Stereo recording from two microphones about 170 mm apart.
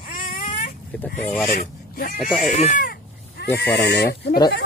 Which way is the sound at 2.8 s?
65° left (ahead or behind).